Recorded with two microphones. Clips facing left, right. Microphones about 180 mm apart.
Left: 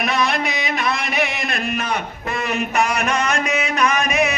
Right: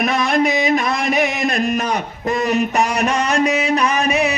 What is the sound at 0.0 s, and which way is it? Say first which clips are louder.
Music: right 4 dB; 50° right (ahead or behind).